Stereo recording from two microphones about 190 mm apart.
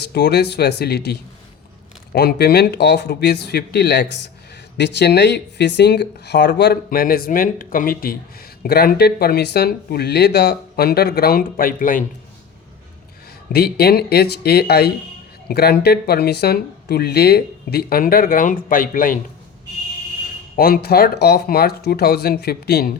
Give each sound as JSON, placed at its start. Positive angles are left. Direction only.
{"t": 0.1, "sound": "speech", "side_deg": 60}
{"t": 13.5, "sound": "speech", "side_deg": 55}
{"t": 20.6, "sound": "speech", "side_deg": 55}